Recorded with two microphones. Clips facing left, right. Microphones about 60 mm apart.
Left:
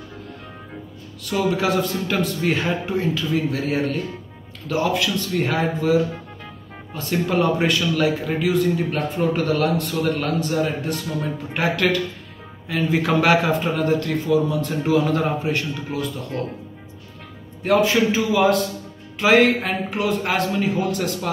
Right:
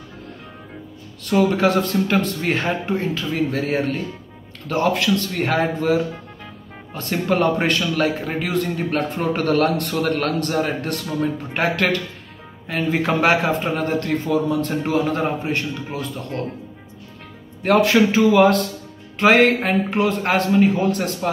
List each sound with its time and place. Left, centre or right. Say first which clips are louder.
1.2 s speech: right 4 dB; right
4.6 s a man's voice: right 2 dB; right
11.5 s speech: left 1 dB; right
17.6 s a man's voice: right 2 dB; right
19.1 s speech: right 1 dB; right